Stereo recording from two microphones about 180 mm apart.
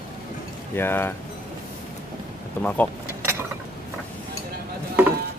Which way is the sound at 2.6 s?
10° left (ahead or behind).